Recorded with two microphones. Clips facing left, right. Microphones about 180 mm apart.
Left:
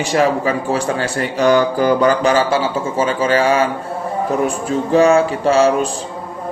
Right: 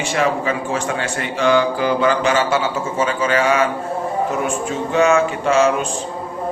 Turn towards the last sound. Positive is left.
turn(degrees=35)  # may be behind; listen again after turning